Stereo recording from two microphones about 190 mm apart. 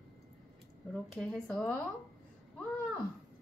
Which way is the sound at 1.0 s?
Centre (ahead or behind).